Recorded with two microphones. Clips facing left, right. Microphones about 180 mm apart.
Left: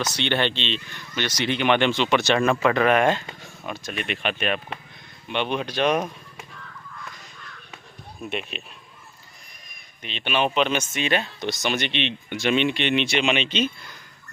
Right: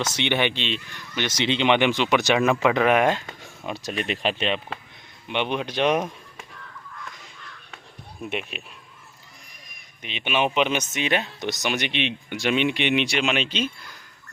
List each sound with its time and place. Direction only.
0.0 s speech: 25° right (ahead or behind)
0.3 s speech: 15° right (ahead or behind)
3.7 s speech: 35° right (ahead or behind); by 6.0 s 20° right (ahead or behind)
8.2 s speech: 15° right (ahead or behind)
10.0 s speech: 10° right (ahead or behind)